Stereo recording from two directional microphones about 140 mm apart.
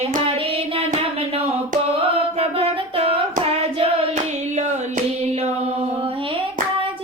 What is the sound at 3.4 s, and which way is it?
Hands, 45° right (ahead or behind).